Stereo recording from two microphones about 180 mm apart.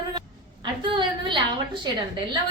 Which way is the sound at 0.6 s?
25° right (ahead or behind).